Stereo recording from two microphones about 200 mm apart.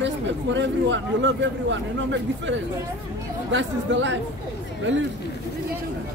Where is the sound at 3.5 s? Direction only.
65° right (ahead or behind).